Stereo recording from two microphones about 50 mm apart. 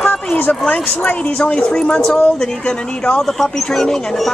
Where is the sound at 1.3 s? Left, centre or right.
Centre.